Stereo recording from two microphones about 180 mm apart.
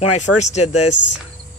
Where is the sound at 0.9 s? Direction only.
80° left.